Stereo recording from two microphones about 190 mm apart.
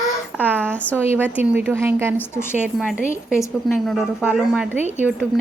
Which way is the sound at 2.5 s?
5° right (ahead or behind).